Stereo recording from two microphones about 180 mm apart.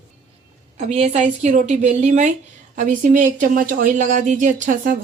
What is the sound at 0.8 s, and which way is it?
A woman's voice, 35° right (ahead or behind).